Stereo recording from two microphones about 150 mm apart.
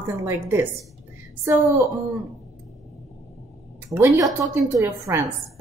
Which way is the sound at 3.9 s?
15° right (ahead or behind).